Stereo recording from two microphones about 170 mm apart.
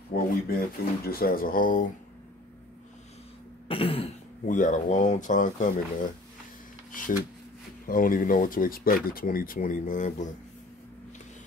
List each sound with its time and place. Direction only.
0.1 s speech: 60° left (ahead or behind)
3.6 s throat clearing: 35° left (ahead or behind)
4.5 s speech: 50° left (ahead or behind)